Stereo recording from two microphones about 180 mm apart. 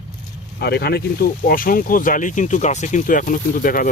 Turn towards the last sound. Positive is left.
turn(degrees=50)  # may be behind; listen again after turning